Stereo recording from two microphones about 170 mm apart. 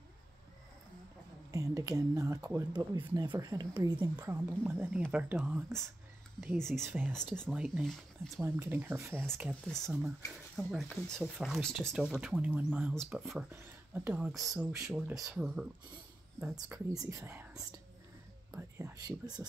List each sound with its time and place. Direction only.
1.5 s speech: 20° right (ahead or behind)
4.3 s speech: 10° right (ahead or behind)
8.5 s speech: 10° right (ahead or behind)
9.7 s speech: 5° left (ahead or behind)
16.3 s speech: 20° right (ahead or behind)